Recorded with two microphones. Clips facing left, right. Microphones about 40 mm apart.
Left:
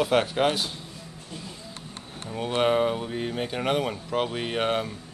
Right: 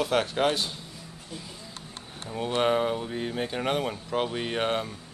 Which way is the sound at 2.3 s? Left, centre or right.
Centre.